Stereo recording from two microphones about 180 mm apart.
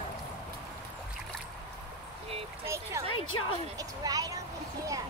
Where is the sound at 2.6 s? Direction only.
15° right (ahead or behind).